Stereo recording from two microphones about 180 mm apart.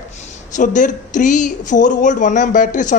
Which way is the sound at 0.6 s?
45° left (ahead or behind).